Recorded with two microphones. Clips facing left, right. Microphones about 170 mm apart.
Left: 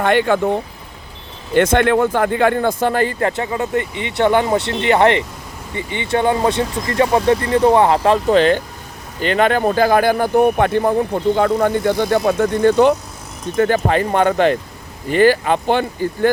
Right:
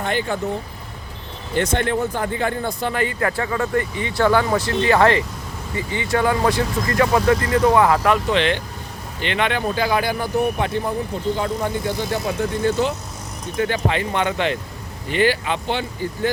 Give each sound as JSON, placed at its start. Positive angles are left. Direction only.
{"t": 0.0, "sound": "speech", "side_deg": 70}
{"t": 1.5, "sound": "speech", "side_deg": 80}
{"t": 2.8, "sound": "speech", "side_deg": 40}
{"t": 13.6, "sound": "speech", "side_deg": 45}